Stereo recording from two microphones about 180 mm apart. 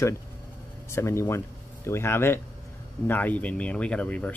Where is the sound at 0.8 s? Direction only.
15° left (ahead or behind).